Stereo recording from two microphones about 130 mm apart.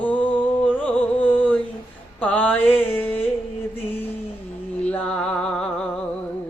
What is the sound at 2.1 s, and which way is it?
Mantra, 10° left (ahead or behind).